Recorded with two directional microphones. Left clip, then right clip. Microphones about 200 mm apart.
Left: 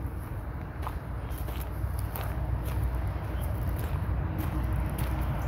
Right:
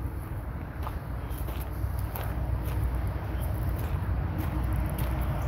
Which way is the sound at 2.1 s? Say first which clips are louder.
Even; centre (ahead or behind).